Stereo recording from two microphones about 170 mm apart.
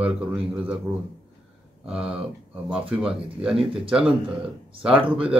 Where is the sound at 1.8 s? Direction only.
5° right (ahead or behind).